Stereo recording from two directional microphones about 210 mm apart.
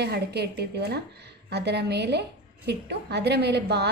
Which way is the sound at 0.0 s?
50° right (ahead or behind).